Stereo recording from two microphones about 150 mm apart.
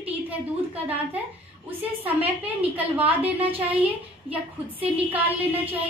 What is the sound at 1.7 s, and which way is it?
A woman's voice, 10° right (ahead or behind).